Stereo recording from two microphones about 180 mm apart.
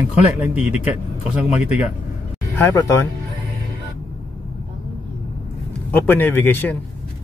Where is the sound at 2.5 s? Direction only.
15° left (ahead or behind).